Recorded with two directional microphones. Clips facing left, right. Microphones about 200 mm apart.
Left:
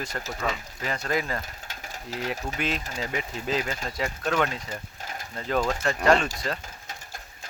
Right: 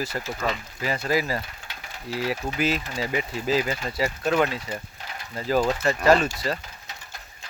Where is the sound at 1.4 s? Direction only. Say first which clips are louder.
Right 1 dB; 45° left (ahead or behind).